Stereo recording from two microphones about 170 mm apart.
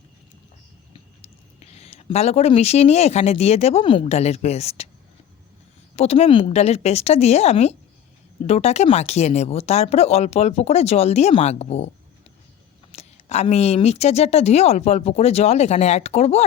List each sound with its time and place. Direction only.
0.9 s speech: 40° left (ahead or behind)
6.0 s a woman's voice: 35° left (ahead or behind)
12.9 s a woman's voice: 40° left (ahead or behind)